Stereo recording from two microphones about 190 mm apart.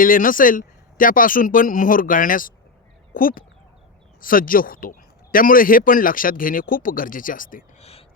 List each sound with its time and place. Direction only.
0.0 s speech: 45° left (ahead or behind)